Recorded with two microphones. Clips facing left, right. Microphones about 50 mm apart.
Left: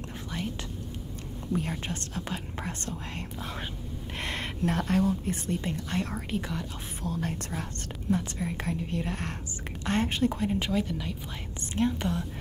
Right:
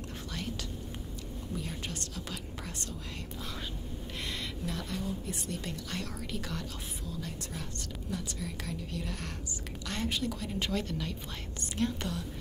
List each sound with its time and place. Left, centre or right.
0.3 s whispering: left
1.5 s a woman's voice: left
7.0 s a woman's voice: left
10.6 s speech: centre
11.7 s speech: left